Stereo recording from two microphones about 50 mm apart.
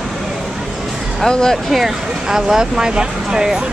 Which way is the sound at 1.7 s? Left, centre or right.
Centre.